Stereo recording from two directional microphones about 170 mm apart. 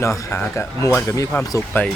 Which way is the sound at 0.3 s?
15° left (ahead or behind).